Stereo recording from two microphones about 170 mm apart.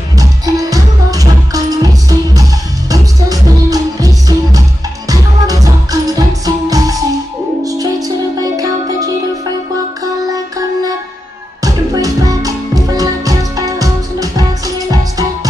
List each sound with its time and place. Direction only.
0.2 s music: 20° right (ahead or behind)
11.6 s music: 20° right (ahead or behind)